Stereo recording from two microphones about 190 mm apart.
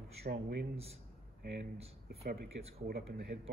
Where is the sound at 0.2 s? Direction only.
55° right (ahead or behind).